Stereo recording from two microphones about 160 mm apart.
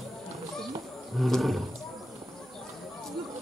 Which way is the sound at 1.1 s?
Centre (ahead or behind).